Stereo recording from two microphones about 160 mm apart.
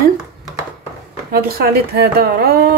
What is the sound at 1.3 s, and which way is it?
A woman's voice, 70° right (ahead or behind).